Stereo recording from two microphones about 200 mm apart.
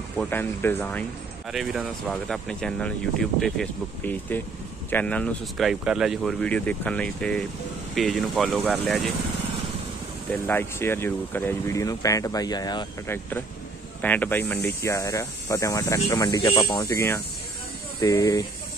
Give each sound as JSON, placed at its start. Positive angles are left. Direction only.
{"t": 0.2, "sound": "speech", "side_deg": 10}
{"t": 10.3, "sound": "speech", "side_deg": 10}
{"t": 14.0, "sound": "speech", "side_deg": 10}